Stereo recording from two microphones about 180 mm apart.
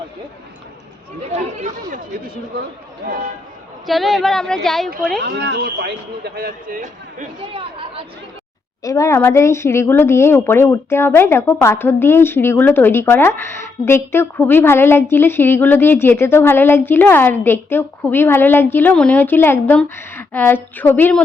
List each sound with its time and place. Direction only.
1.3 s speech: 40° right (ahead or behind)
3.8 s speech: centre (ahead or behind)
5.2 s a man's voice: 70° right (ahead or behind); by 7.3 s 45° right (ahead or behind)
8.8 s speech: 20° left (ahead or behind)